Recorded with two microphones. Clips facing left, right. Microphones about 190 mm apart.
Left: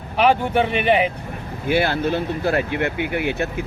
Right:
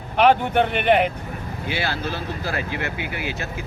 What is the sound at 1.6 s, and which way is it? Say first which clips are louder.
Speech: left 8 dB; 55° left (ahead or behind).